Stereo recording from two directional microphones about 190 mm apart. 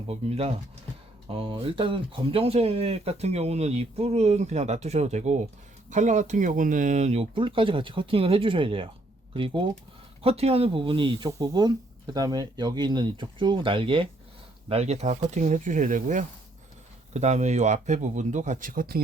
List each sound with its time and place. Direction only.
0.1 s speech: 30° right (ahead or behind)